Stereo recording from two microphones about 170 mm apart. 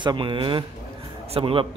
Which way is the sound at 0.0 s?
30° right (ahead or behind).